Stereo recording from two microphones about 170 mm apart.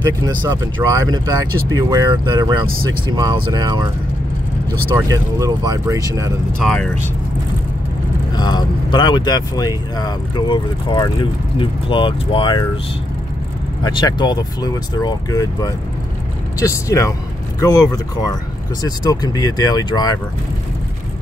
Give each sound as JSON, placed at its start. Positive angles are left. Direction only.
{"t": 0.4, "sound": "speech", "side_deg": -25}
{"t": 4.9, "sound": "speech", "side_deg": -20}
{"t": 6.6, "sound": "speech", "side_deg": 5}
{"t": 8.4, "sound": "speech", "side_deg": 25}
{"t": 13.8, "sound": "speech", "side_deg": 25}